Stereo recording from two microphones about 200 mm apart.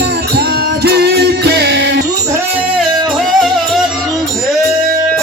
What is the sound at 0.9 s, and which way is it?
Music, 55° right (ahead or behind).